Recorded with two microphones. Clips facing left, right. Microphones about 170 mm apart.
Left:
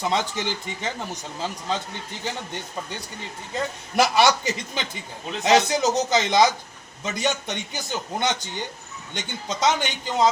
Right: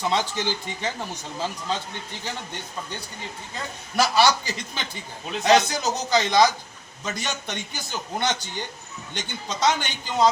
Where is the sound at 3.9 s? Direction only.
20° left (ahead or behind).